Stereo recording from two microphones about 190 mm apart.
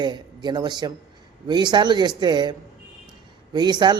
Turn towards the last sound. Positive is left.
turn(degrees=-20)  # may be behind; listen again after turning